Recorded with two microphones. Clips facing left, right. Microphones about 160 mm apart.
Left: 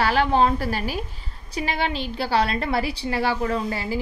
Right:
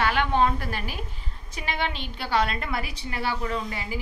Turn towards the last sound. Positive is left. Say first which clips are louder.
# left 5 dB
turn(degrees=35)  # may be behind; listen again after turning